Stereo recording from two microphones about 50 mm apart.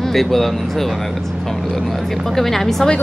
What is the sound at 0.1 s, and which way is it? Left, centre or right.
Speech, centre.